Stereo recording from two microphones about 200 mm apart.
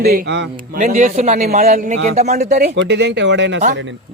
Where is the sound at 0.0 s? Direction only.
50° right (ahead or behind).